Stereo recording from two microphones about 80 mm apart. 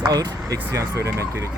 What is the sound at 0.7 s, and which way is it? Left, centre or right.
Speech, right.